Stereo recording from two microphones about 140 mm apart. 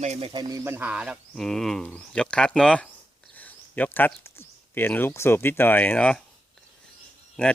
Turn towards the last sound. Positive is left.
turn(degrees=5)  # may be behind; listen again after turning